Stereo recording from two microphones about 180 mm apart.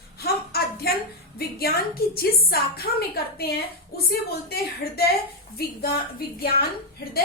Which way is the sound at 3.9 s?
60° left (ahead or behind).